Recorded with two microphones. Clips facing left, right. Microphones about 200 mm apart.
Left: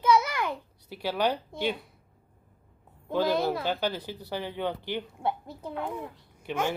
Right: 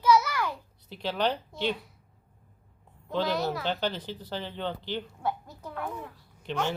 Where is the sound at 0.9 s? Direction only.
10° left (ahead or behind).